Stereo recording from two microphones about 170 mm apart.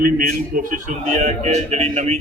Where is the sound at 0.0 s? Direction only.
60° right (ahead or behind).